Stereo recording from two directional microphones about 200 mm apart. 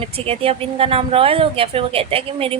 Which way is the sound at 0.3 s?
30° right (ahead or behind).